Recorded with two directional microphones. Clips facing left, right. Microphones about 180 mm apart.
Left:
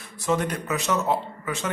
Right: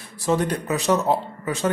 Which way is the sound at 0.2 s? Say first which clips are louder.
Right 3 dB; 35° right (ahead or behind).